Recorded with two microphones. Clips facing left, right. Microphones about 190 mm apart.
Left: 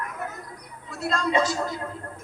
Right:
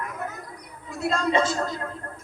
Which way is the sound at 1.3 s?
5° left (ahead or behind).